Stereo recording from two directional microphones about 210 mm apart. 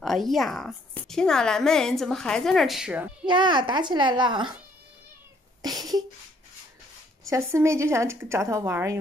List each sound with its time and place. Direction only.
0.0 s a woman's voice: centre (ahead or behind)
3.3 s a child's voice: 20° right (ahead or behind)
5.6 s a sound: 20° right (ahead or behind)
7.2 s speech: 15° right (ahead or behind)